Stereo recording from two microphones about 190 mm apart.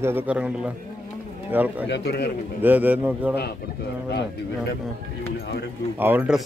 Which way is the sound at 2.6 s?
10° right (ahead or behind).